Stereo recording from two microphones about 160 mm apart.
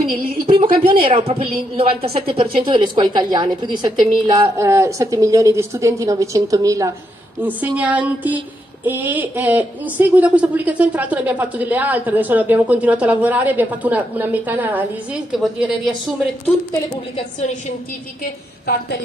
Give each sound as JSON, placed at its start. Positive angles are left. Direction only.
{"t": 0.5, "sound": "a woman's voice", "side_deg": -35}
{"t": 4.6, "sound": "a woman's voice", "side_deg": -15}
{"t": 16.9, "sound": "a woman's voice", "side_deg": 45}
{"t": 18.2, "sound": "a woman's voice", "side_deg": 80}